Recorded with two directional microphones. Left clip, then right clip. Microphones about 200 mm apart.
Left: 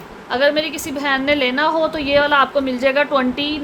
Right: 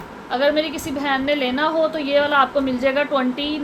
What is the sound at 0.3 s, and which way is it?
A woman's voice, 35° left (ahead or behind).